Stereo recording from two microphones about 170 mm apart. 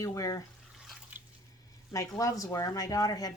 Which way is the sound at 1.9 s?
20° left (ahead or behind).